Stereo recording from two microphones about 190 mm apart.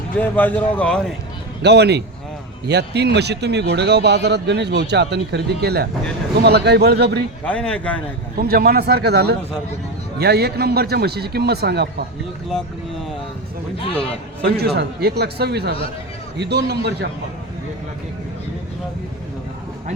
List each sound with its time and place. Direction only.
0.2 s a man's voice: 10° left (ahead or behind)
1.6 s speech: 60° right (ahead or behind)
7.4 s a man's voice: 5° left (ahead or behind)
8.4 s speech: 50° right (ahead or behind)
13.9 s a man's voice: 5° left (ahead or behind)
14.4 s speech: 60° right (ahead or behind)